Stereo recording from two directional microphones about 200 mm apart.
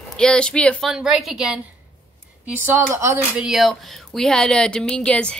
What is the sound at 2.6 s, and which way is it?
Speech, 10° right (ahead or behind).